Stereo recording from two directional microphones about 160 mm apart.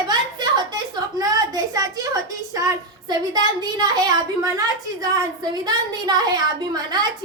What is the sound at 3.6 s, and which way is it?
A woman's voice, 25° right (ahead or behind).